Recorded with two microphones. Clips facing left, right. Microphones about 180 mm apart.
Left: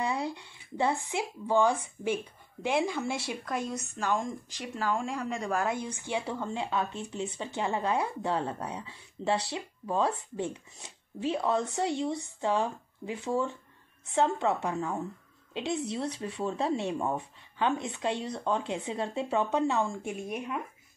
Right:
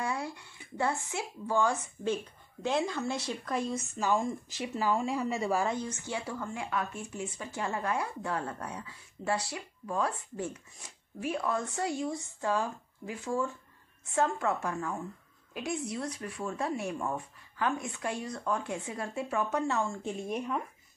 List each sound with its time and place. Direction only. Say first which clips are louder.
0.0 s a sound: left 3 dB; 20° left (ahead or behind)
1.1 s speech: left 4 dB; 15° left (ahead or behind); by 5.7 s 5° right (ahead or behind)
5.7 s a woman's voice: left 2 dB; 10° left (ahead or behind)